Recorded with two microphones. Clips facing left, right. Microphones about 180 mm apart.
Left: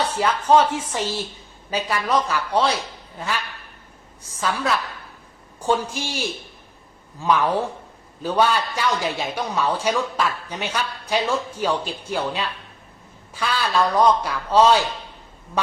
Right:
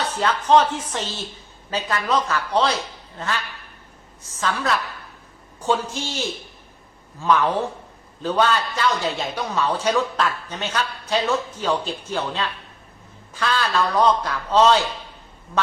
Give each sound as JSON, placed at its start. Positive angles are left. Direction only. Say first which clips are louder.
{"t": 0.1, "sound": "a woman's voice", "louder": "right 2 dB", "side_deg": 10}